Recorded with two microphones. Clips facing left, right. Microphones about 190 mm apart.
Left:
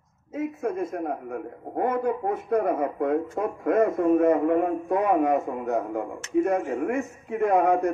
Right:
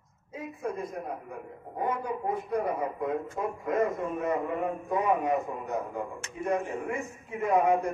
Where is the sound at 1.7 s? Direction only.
55° left (ahead or behind).